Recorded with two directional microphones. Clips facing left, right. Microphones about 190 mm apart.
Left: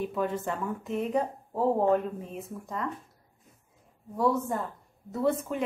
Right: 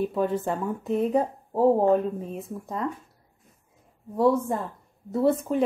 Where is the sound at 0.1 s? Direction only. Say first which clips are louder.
Right 5 dB; 35° right (ahead or behind).